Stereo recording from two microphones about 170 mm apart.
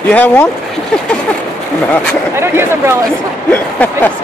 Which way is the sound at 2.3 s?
15° right (ahead or behind).